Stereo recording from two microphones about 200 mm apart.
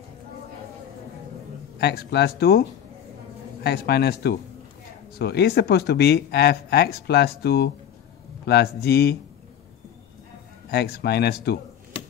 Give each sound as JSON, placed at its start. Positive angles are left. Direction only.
{"t": 1.8, "sound": "speech", "side_deg": 55}
{"t": 3.6, "sound": "speech", "side_deg": 55}
{"t": 10.7, "sound": "speech", "side_deg": 55}